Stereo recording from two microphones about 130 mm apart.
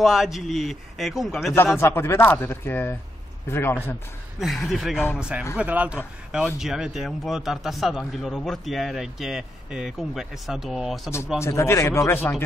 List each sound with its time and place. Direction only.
0.0 s speech: centre (ahead or behind)
1.8 s speech: 20° left (ahead or behind)
4.4 s a man's voice: centre (ahead or behind)
11.3 s speech: 20° left (ahead or behind)